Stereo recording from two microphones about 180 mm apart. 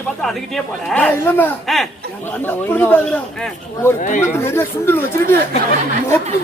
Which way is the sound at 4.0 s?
45° left (ahead or behind).